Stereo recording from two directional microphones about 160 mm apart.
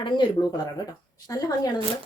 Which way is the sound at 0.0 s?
30° left (ahead or behind).